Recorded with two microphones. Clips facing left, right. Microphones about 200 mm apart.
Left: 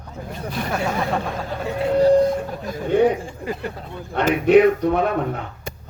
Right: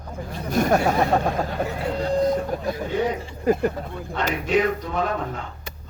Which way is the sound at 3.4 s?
45° right (ahead or behind).